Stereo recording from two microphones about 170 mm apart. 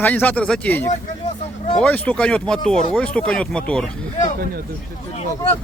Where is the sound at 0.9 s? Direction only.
40° left (ahead or behind).